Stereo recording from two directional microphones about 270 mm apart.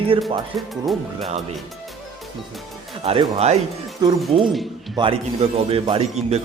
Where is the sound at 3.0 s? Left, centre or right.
Right.